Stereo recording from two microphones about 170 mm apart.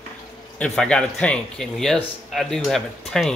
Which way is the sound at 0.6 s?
5° left (ahead or behind).